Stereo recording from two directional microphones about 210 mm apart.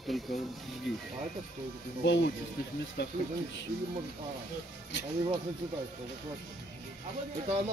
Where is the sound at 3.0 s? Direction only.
55° left (ahead or behind).